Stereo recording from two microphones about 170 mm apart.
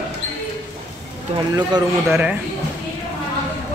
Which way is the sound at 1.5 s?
25° right (ahead or behind).